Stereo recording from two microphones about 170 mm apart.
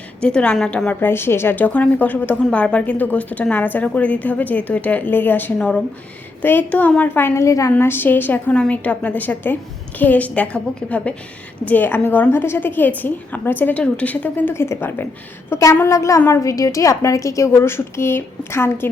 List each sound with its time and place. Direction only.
0.2 s a woman's voice: 5° left (ahead or behind)